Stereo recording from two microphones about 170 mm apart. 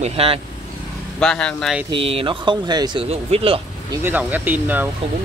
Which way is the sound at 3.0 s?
35° right (ahead or behind).